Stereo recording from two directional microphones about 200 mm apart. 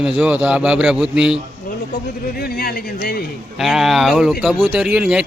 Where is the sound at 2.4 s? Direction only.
50° left (ahead or behind).